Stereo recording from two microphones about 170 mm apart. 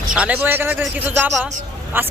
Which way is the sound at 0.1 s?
10° right (ahead or behind).